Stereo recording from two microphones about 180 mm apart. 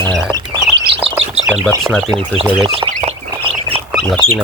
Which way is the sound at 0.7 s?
30° right (ahead or behind).